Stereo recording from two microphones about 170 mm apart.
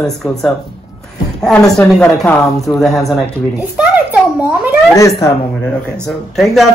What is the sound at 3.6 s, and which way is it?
Speech, 10° right (ahead or behind).